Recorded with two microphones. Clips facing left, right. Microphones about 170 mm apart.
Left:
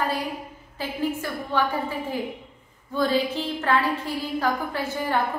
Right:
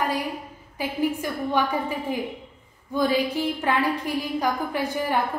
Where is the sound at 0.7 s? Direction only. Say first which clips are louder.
Right 2 dB; 15° right (ahead or behind).